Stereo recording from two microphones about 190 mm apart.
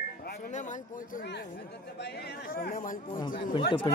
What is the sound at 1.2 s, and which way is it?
Chatter, 65° left (ahead or behind).